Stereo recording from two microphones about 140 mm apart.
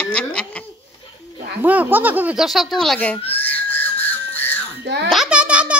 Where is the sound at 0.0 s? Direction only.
10° left (ahead or behind).